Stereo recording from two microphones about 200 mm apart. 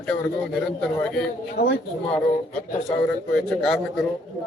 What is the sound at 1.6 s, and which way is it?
Speech, 55° left (ahead or behind).